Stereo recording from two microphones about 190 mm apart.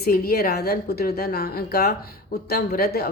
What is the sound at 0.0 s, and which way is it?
Speech, 55° left (ahead or behind).